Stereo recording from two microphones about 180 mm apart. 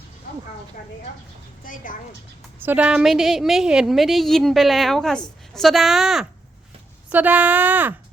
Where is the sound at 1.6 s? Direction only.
50° left (ahead or behind).